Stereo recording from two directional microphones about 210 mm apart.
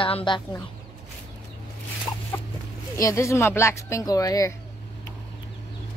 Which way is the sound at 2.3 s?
10° left (ahead or behind).